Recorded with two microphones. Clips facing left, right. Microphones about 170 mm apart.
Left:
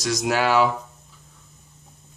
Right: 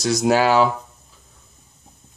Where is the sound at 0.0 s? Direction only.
30° right (ahead or behind).